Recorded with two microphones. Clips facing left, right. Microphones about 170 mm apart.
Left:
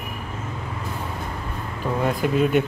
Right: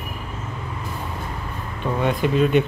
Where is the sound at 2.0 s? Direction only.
5° left (ahead or behind).